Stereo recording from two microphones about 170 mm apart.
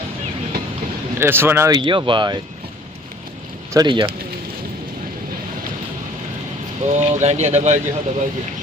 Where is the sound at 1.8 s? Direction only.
30° right (ahead or behind).